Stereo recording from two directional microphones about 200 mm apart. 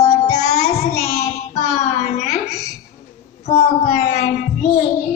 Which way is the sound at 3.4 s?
35° left (ahead or behind).